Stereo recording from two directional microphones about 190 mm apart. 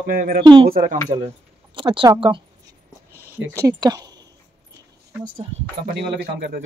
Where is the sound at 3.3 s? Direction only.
15° right (ahead or behind).